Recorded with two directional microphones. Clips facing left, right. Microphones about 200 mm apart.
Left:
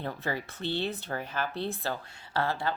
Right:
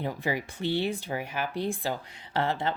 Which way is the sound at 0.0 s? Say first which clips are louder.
Right 3 dB; 15° right (ahead or behind).